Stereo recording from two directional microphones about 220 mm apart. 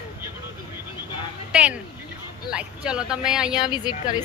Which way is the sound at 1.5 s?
5° right (ahead or behind).